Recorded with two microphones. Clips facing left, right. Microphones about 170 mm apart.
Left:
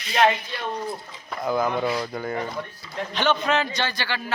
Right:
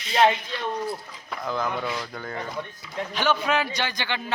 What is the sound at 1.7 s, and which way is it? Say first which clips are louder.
Speech: left 5 dB; 25° left (ahead or behind).